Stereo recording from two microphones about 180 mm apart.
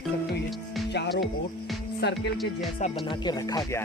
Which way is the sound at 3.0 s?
25° left (ahead or behind).